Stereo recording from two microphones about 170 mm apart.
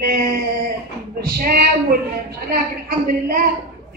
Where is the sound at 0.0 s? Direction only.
60° right (ahead or behind).